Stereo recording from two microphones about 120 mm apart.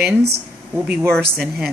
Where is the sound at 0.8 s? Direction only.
15° right (ahead or behind).